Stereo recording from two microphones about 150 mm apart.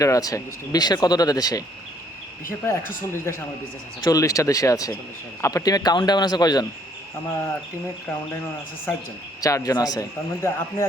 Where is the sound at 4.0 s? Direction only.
20° left (ahead or behind).